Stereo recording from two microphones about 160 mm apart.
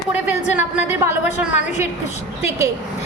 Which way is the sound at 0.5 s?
10° right (ahead or behind).